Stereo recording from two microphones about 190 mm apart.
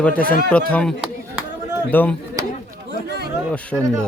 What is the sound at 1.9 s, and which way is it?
Speech, 10° left (ahead or behind).